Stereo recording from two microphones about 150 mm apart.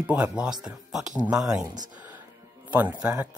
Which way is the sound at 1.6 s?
25° right (ahead or behind).